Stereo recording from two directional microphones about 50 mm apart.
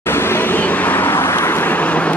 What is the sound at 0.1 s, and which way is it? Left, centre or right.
Vehicle, left.